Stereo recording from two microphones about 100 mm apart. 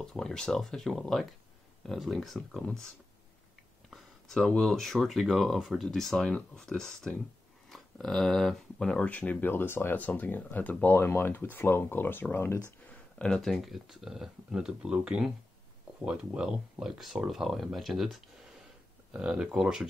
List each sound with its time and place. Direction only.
0.0 s speech: 5° left (ahead or behind)
3.9 s a sound: 5° left (ahead or behind)
4.5 s speech: 5° left (ahead or behind); by 12.5 s 20° left (ahead or behind)
12.8 s speech: 10° left (ahead or behind); by 19.9 s 5° right (ahead or behind)